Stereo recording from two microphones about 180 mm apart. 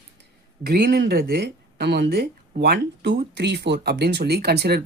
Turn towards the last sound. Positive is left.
turn(degrees=-65)  # may be behind; listen again after turning